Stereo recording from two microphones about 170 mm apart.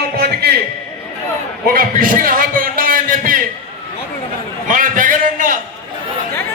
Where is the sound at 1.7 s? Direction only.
55° right (ahead or behind).